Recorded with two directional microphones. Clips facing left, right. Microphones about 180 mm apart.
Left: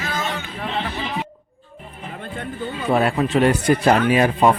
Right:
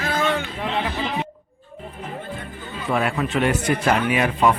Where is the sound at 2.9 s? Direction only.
35° left (ahead or behind).